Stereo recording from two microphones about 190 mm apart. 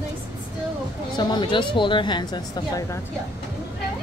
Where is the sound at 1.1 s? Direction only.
25° left (ahead or behind).